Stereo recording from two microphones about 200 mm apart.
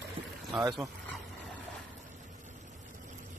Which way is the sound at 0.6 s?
15° right (ahead or behind).